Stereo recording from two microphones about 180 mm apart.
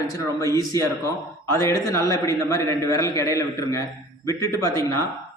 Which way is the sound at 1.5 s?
20° left (ahead or behind).